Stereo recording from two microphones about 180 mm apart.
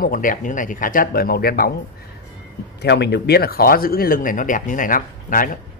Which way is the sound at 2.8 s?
70° left (ahead or behind).